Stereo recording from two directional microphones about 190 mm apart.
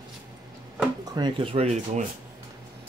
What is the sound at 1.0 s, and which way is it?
Speech, 25° right (ahead or behind).